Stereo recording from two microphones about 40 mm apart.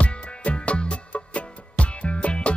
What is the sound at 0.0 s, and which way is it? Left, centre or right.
Music, left.